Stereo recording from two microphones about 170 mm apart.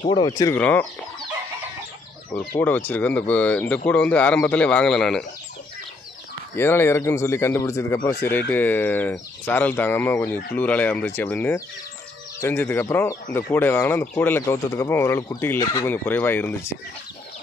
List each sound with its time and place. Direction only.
0.1 s speech: 25° left (ahead or behind)
0.6 s speech: 10° left (ahead or behind)
2.3 s speech: 10° left (ahead or behind)
6.5 s speech: 15° left (ahead or behind)